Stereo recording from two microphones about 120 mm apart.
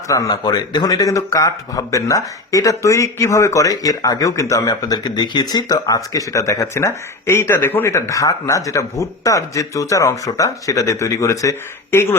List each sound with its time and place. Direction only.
0.1 s speech: 30° left (ahead or behind)